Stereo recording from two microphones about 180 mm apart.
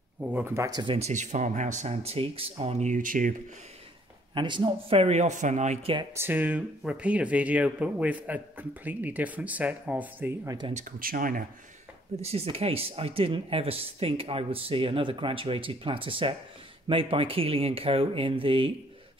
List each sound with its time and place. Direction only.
0.2 s speech: 10° right (ahead or behind)
0.7 s speech: 25° right (ahead or behind)
0.9 s speech: 40° right (ahead or behind)
4.3 s speech: 25° right (ahead or behind)
6.1 s speech: 10° right (ahead or behind)
10.7 s speech: 45° right (ahead or behind)
12.2 s speech: 35° right (ahead or behind)